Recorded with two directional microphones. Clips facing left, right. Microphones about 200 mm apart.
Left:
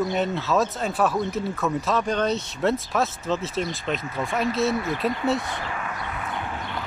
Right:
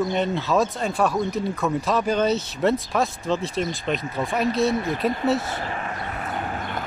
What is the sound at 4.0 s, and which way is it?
Speech, 25° right (ahead or behind).